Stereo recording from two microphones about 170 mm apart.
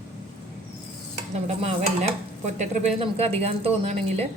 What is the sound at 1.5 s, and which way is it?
A woman's voice, 40° right (ahead or behind).